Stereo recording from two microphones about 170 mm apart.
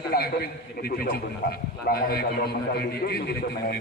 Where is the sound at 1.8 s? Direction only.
65° left (ahead or behind).